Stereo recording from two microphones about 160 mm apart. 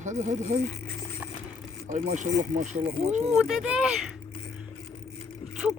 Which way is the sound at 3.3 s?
5° right (ahead or behind).